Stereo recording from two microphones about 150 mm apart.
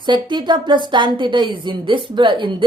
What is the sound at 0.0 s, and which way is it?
Speech, 30° right (ahead or behind).